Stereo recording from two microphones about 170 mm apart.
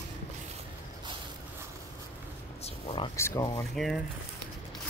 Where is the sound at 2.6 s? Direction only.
30° left (ahead or behind).